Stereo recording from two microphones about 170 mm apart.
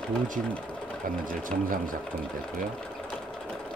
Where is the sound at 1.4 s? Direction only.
55° right (ahead or behind).